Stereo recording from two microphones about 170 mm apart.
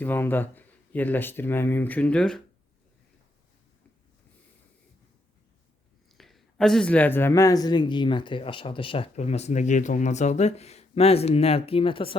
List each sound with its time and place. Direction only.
0.0 s speech: 10° left (ahead or behind)
6.1 s speech: centre (ahead or behind); by 12.1 s 30° left (ahead or behind)